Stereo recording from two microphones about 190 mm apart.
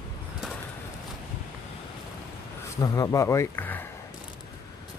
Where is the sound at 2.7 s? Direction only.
20° left (ahead or behind).